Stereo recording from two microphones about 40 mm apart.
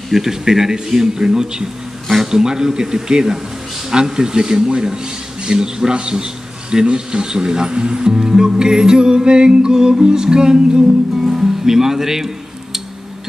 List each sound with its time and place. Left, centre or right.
0.1 s speech: centre